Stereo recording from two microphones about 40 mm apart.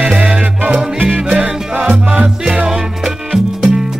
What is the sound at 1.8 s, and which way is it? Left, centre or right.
Music, centre.